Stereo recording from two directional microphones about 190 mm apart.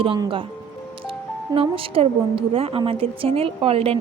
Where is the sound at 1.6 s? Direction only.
30° right (ahead or behind).